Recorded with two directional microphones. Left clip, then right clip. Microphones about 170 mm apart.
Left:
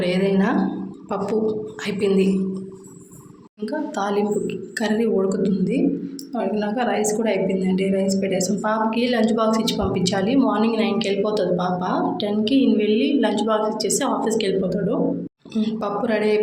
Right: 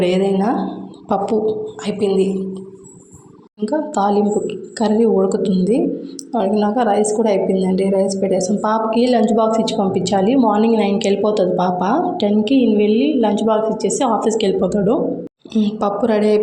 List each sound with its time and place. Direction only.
0.0 s a woman's voice: 35° right (ahead or behind)
3.7 s a woman's voice: 30° right (ahead or behind)